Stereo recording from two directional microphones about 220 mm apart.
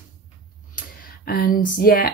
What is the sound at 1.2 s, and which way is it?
Speech, 40° left (ahead or behind).